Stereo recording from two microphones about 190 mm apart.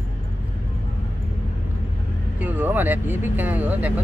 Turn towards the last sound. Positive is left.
turn(degrees=-10)  # may be behind; listen again after turning